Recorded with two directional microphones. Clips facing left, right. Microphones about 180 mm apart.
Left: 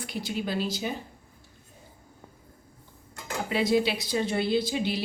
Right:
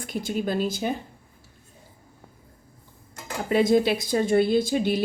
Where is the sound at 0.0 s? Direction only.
50° right (ahead or behind).